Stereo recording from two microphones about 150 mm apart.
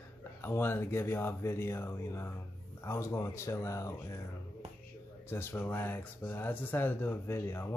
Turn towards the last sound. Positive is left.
turn(degrees=15)  # may be behind; listen again after turning